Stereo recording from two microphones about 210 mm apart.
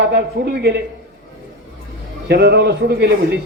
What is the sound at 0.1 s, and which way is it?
Speech, 50° right (ahead or behind).